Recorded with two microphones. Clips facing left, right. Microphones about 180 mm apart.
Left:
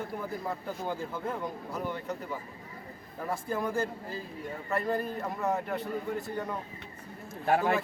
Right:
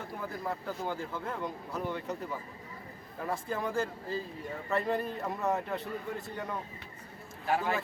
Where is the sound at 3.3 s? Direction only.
10° left (ahead or behind).